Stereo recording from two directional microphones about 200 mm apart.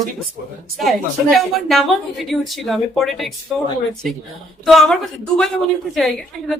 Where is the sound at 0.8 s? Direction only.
Centre (ahead or behind).